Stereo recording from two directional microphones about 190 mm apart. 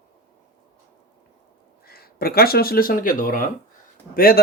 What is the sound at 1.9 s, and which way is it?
Speech, 55° left (ahead or behind).